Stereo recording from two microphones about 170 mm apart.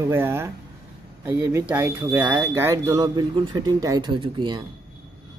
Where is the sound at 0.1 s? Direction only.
15° right (ahead or behind).